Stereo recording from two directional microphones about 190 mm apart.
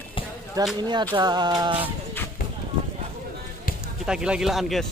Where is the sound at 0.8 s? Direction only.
25° right (ahead or behind).